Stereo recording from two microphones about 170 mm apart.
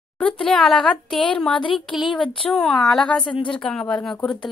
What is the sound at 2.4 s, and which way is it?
Speech, 5° left (ahead or behind).